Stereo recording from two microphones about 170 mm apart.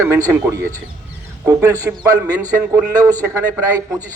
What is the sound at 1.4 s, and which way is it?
A man's voice, 20° right (ahead or behind).